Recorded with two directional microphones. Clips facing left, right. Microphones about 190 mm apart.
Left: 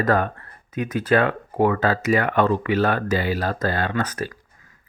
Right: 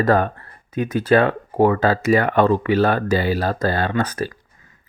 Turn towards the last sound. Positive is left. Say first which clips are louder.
# right 3 dB
turn(degrees=-35)  # may be behind; listen again after turning